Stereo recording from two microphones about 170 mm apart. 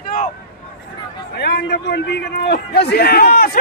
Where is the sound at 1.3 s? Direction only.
85° left.